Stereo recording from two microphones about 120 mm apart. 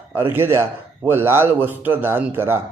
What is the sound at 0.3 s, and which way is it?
A man's voice, 20° right (ahead or behind).